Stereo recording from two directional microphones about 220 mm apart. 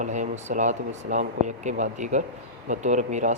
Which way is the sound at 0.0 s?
35° right (ahead or behind).